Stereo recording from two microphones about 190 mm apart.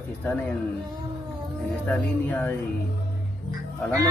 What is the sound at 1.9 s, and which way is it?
Speech, 5° left (ahead or behind).